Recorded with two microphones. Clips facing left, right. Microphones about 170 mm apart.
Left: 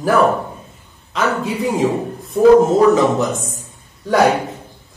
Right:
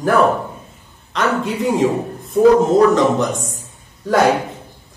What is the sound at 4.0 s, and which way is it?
Speech, centre (ahead or behind).